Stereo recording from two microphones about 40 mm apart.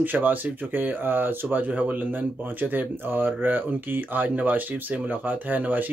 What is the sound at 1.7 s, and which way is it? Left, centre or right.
Speech, right.